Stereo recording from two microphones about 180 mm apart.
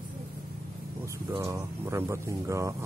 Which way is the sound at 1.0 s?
15° right (ahead or behind).